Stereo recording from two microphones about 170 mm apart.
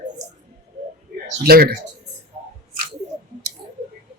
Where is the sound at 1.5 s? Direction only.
60° right (ahead or behind).